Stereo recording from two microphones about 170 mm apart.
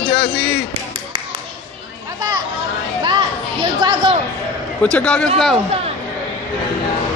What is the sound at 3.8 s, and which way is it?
Speech, 30° right (ahead or behind).